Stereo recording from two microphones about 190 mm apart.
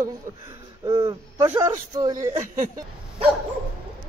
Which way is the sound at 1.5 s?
15° right (ahead or behind).